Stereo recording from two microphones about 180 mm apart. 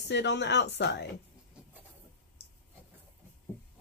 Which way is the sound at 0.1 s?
70° left (ahead or behind).